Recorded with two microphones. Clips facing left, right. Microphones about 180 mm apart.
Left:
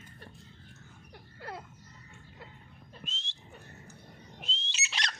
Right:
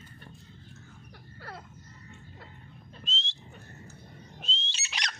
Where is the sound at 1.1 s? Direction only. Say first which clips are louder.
Left 3 dB; 20° left (ahead or behind).